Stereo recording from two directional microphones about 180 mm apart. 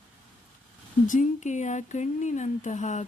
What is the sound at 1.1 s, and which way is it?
Speech, 45° left (ahead or behind).